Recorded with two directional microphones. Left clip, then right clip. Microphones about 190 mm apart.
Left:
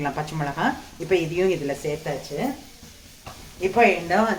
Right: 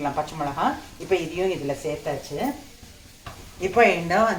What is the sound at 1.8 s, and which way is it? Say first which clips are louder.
Speech: left 1 dB; 25° left (ahead or behind).